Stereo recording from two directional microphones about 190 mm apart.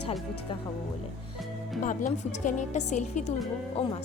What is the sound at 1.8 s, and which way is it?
A woman's voice, 40° left (ahead or behind).